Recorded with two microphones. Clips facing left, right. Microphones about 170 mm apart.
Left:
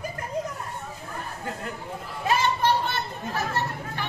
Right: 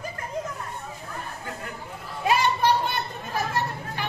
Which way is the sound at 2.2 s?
15° right (ahead or behind).